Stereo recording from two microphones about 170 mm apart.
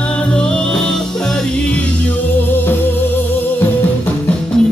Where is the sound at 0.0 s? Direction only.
5° left (ahead or behind).